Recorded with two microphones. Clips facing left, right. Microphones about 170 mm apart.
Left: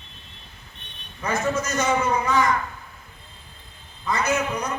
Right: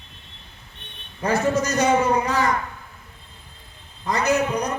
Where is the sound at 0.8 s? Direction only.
55° right (ahead or behind).